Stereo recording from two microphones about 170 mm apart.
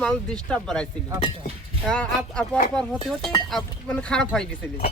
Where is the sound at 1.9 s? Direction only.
5° left (ahead or behind).